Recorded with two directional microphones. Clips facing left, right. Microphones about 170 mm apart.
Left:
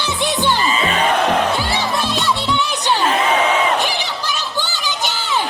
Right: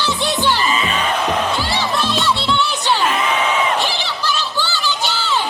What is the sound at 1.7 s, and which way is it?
Music, 15° left (ahead or behind).